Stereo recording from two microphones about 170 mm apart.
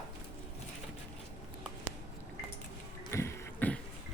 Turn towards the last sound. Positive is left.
turn(degrees=10)  # may be behind; listen again after turning